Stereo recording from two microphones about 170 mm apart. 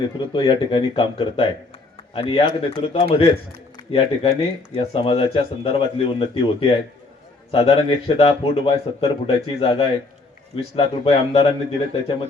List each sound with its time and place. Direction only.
0.3 s speech: 30° left (ahead or behind)